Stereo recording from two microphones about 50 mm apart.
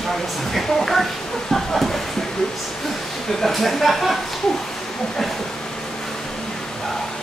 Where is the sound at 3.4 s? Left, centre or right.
Centre.